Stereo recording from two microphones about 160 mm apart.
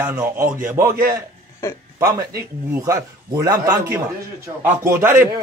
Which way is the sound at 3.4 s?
15° right (ahead or behind).